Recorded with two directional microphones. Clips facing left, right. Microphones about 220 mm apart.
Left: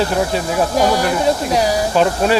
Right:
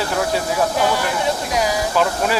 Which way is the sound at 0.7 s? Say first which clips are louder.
Left 4 dB; 40° left (ahead or behind).